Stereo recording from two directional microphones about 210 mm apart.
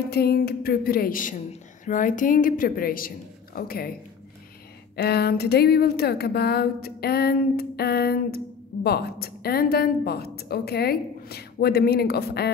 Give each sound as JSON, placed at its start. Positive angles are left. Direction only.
{"t": 0.1, "sound": "a woman's voice", "side_deg": 45}
{"t": 4.9, "sound": "a woman's voice", "side_deg": 50}